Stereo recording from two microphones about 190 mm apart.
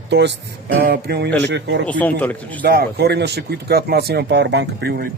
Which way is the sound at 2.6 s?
60° right (ahead or behind).